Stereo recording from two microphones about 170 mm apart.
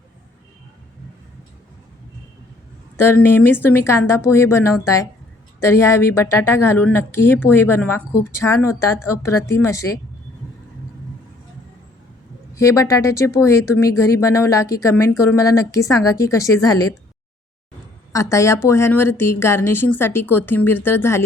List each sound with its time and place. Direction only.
3.0 s a woman's voice: 15° left (ahead or behind)
12.5 s a woman's voice: 20° left (ahead or behind)
18.1 s a woman's voice: 15° left (ahead or behind)